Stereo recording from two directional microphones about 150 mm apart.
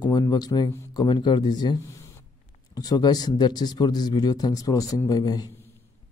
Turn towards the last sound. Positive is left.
turn(degrees=25)  # may be behind; listen again after turning